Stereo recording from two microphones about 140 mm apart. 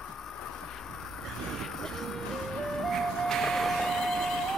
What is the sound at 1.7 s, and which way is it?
Music, 5° left (ahead or behind).